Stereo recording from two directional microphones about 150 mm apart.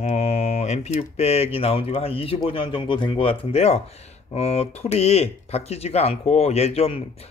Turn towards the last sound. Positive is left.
turn(degrees=40)  # may be behind; listen again after turning